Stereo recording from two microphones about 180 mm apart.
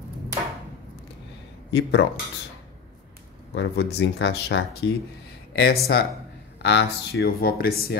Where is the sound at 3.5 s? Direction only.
70° left (ahead or behind).